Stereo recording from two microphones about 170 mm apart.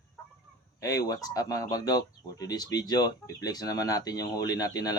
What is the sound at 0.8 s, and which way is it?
Speech, 20° left (ahead or behind).